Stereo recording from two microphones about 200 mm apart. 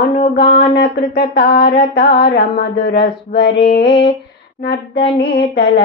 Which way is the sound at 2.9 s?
55° left (ahead or behind).